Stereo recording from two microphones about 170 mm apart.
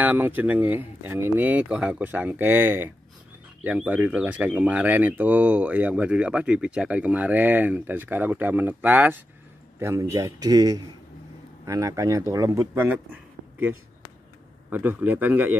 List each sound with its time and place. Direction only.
0.0 s a man's voice: 10° right (ahead or behind)